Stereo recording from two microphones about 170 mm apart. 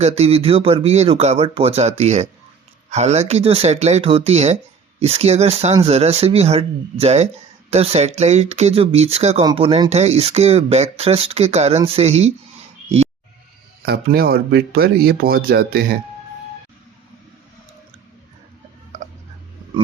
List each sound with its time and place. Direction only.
0.0 s speech: 35° right (ahead or behind)
13.8 s speech: 65° right (ahead or behind)